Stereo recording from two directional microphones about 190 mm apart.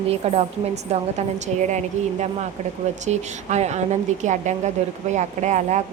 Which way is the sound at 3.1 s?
35° right (ahead or behind).